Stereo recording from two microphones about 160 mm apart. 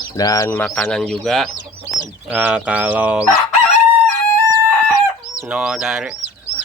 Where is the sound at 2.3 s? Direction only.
10° right (ahead or behind).